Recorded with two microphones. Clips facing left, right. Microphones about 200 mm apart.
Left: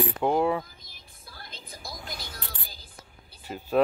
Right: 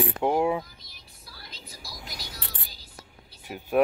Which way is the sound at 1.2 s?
50° left (ahead or behind).